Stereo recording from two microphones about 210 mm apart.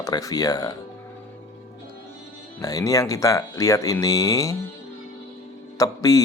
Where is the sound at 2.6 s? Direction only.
15° left (ahead or behind).